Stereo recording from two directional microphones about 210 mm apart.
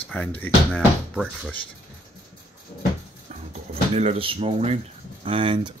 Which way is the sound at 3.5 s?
30° right (ahead or behind).